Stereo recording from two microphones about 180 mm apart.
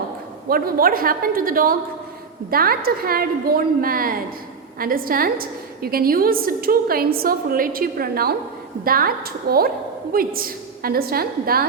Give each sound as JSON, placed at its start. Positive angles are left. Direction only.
{"t": 0.4, "sound": "a woman's voice", "side_deg": -55}